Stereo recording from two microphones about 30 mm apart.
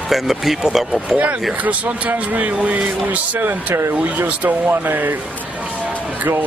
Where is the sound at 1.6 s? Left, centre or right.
Right.